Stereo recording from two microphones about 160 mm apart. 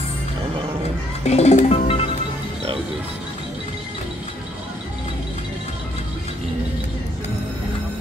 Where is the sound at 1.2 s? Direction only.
40° left (ahead or behind).